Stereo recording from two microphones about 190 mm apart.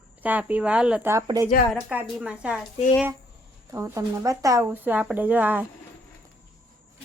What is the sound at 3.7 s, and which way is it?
Speech, 15° right (ahead or behind).